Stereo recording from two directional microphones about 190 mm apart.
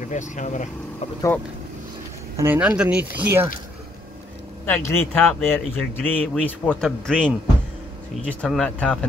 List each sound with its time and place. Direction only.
0.0 s speech: 40° left (ahead or behind)
2.3 s speech: 10° right (ahead or behind)
4.6 s speech: 10° left (ahead or behind)